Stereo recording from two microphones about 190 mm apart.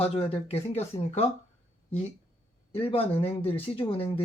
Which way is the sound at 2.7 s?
30° left (ahead or behind).